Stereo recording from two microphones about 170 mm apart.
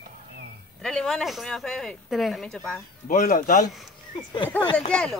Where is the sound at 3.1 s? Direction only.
45° left (ahead or behind).